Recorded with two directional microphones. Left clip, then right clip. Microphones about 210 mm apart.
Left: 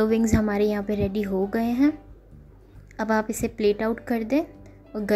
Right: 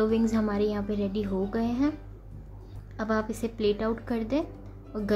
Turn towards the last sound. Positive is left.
turn(degrees=20)  # may be behind; listen again after turning